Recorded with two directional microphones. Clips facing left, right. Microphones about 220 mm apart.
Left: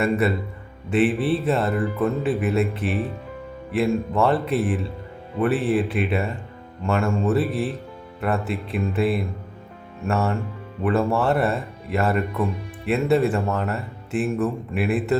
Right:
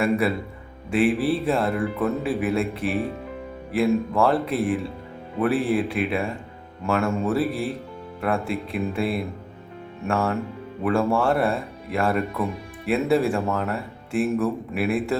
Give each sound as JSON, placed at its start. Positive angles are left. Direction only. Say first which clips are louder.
{"t": 0.0, "sound": "speech", "louder": "left 1 dB", "side_deg": 0}